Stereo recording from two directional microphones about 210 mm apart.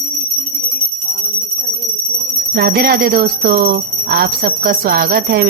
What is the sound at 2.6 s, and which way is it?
Speech, 50° right (ahead or behind).